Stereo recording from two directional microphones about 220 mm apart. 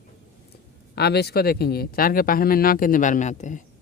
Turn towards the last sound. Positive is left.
turn(degrees=35)  # may be behind; listen again after turning